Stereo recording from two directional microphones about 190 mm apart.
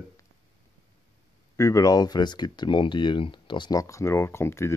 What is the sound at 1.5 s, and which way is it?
Speech, 15° left (ahead or behind).